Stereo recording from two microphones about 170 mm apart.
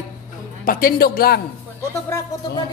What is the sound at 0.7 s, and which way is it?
Speech, 60° left (ahead or behind).